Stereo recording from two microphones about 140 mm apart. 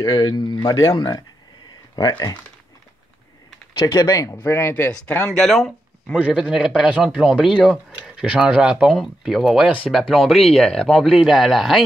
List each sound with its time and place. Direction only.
0.0 s speech: 35° left (ahead or behind)
3.8 s speech: 25° left (ahead or behind); by 6.1 s centre (ahead or behind)
6.1 s speech: 10° right (ahead or behind)